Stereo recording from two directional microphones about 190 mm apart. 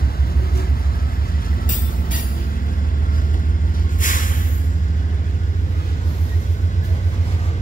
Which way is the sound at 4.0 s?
45° left (ahead or behind).